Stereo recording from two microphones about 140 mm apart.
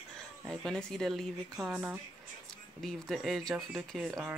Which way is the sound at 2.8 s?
Centre (ahead or behind).